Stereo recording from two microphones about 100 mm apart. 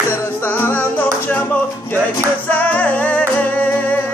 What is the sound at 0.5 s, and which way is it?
Music, 20° left (ahead or behind).